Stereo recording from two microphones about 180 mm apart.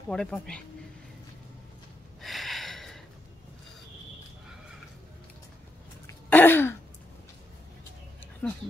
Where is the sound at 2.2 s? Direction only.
Centre (ahead or behind).